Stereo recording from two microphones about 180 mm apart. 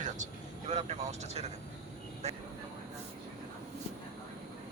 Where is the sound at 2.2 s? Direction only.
40° right (ahead or behind).